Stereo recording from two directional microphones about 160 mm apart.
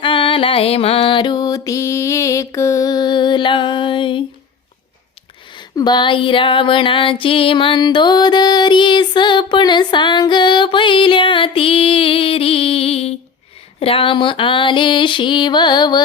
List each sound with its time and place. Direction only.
0.0 s music: 30° left (ahead or behind)
5.5 s female singing: 25° left (ahead or behind)